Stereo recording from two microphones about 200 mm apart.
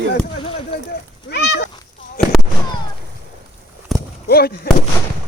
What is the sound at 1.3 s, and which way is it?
Cat, 60° left (ahead or behind).